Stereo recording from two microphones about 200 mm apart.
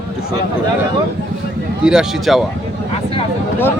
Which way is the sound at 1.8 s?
5° right (ahead or behind).